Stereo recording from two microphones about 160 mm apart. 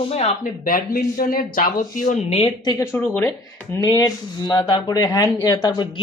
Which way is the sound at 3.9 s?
25° left (ahead or behind).